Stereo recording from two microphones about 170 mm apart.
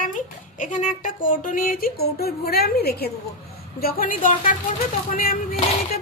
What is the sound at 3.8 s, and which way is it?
Speech, 60° left (ahead or behind).